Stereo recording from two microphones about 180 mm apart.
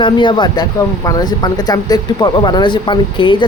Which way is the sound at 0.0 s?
25° left (ahead or behind).